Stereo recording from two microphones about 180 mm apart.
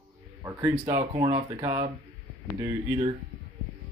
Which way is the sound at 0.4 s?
15° right (ahead or behind).